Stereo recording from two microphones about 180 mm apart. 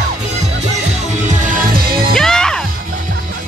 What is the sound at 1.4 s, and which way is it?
Music, 55° right (ahead or behind).